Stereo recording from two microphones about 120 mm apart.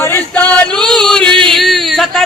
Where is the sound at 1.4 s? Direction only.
Centre (ahead or behind).